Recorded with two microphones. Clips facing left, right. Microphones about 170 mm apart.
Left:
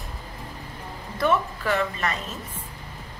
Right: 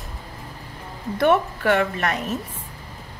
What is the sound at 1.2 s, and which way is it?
A woman's voice, 65° right (ahead or behind).